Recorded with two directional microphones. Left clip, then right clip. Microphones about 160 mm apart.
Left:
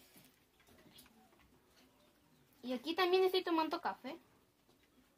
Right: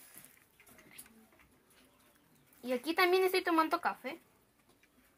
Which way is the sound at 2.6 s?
20° right (ahead or behind).